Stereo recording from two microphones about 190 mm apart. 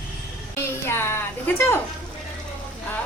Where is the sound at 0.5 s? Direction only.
15° left (ahead or behind).